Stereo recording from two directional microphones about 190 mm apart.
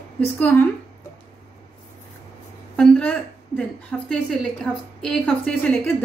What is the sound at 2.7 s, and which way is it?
A woman's voice, 5° left (ahead or behind).